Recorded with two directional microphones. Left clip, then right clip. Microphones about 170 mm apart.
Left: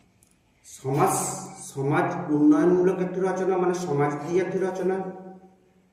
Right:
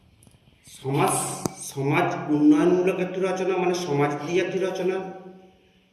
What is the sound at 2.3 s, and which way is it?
Speech, 15° left (ahead or behind).